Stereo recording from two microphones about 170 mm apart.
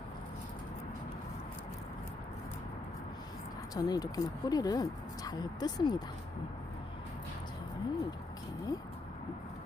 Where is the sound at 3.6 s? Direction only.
20° left (ahead or behind).